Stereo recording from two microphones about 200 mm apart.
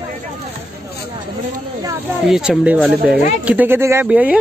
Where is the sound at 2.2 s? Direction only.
Centre (ahead or behind).